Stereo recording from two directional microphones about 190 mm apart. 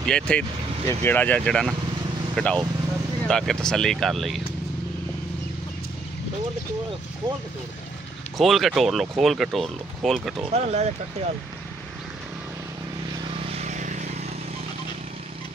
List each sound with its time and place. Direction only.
0.0 s speech: 5° left (ahead or behind)
8.4 s speech: centre (ahead or behind)
10.5 s speech: 35° right (ahead or behind)
13.5 s vehicle: 35° right (ahead or behind)